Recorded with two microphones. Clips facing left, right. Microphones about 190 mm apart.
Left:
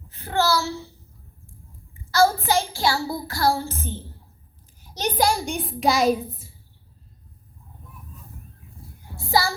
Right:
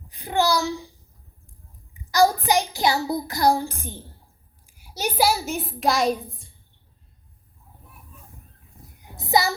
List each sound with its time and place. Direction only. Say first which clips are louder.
0.1 s a child's voice: right 1 dB; 15° right (ahead or behind); by 6.6 s 5° left (ahead or behind)
9.0 s child singing: right 1 dB; 20° right (ahead or behind)